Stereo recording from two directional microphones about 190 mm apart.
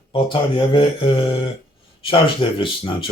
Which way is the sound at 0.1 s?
25° left (ahead or behind).